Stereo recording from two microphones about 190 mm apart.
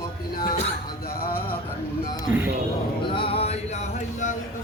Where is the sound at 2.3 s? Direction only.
10° right (ahead or behind).